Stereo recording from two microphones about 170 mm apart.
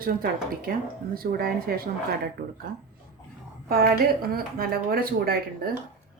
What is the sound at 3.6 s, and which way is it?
Speech, 60° right (ahead or behind).